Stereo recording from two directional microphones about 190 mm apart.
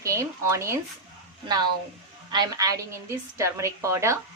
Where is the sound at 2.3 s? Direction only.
20° right (ahead or behind).